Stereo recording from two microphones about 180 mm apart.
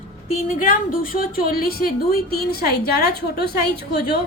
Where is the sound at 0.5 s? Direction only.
50° left (ahead or behind).